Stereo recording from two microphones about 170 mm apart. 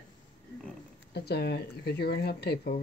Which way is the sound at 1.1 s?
70° left (ahead or behind).